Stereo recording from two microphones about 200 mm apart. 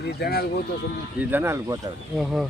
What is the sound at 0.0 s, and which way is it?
Speech, 55° left (ahead or behind).